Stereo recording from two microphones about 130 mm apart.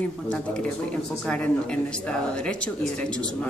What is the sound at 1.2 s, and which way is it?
A man's voice, 5° left (ahead or behind).